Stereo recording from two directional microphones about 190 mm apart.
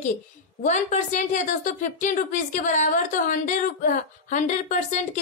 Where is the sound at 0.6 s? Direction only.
40° left (ahead or behind).